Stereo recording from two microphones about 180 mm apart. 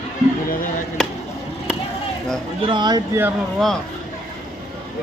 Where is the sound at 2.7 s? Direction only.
25° right (ahead or behind).